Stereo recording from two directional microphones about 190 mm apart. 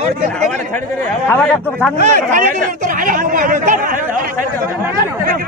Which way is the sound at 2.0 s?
45° right (ahead or behind).